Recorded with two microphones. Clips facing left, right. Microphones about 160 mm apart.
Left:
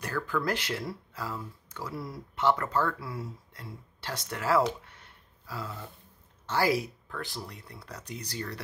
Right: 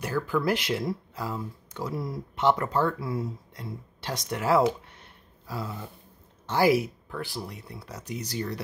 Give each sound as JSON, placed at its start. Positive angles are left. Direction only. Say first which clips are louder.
{"t": 0.0, "sound": "speech", "louder": "right 4 dB", "side_deg": -10}
{"t": 4.8, "sound": "a sound", "louder": "right 3 dB", "side_deg": -20}
{"t": 6.4, "sound": "speech", "louder": "right 5 dB", "side_deg": -15}